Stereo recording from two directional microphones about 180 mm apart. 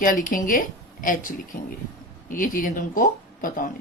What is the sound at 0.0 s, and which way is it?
Speech, 50° left (ahead or behind).